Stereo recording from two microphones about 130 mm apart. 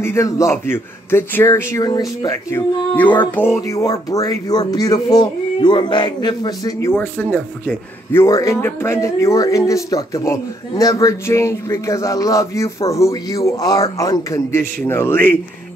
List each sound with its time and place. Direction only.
0.0 s speech: 20° left (ahead or behind)
2.5 s speech: 15° left (ahead or behind); by 6.9 s 30° left (ahead or behind)
7.0 s speech: 15° left (ahead or behind)